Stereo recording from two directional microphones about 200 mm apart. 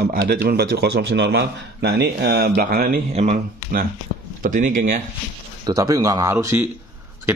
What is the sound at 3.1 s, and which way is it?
Speech, 30° right (ahead or behind).